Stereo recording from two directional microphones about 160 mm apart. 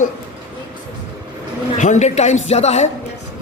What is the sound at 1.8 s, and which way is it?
Speech, 45° left (ahead or behind).